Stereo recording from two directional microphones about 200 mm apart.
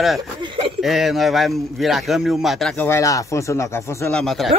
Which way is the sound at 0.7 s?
Centre (ahead or behind).